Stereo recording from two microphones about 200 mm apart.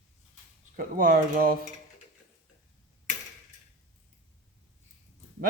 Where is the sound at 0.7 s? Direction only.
45° right (ahead or behind).